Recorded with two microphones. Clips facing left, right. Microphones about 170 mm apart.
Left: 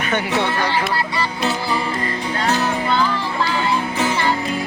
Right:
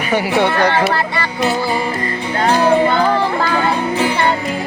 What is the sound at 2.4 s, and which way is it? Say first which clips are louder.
Music: right 9 dB; 55° right (ahead or behind).